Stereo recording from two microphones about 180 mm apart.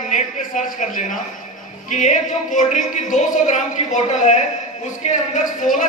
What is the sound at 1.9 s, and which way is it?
A man's voice, 40° left (ahead or behind).